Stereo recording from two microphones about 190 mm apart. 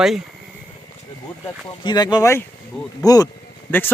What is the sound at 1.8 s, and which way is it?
Speech, 20° left (ahead or behind).